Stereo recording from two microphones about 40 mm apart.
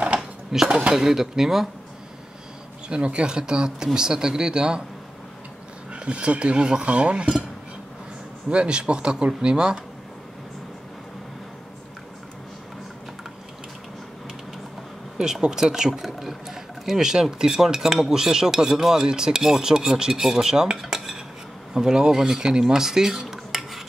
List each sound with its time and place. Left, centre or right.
0.5 s speech: centre
2.9 s speech: right
5.9 s speech: right
8.5 s speech: right
15.5 s speech: centre
20.7 s cutlery: centre
21.7 s speech: centre